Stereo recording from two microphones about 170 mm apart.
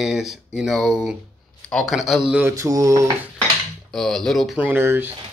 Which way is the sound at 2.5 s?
20° right (ahead or behind).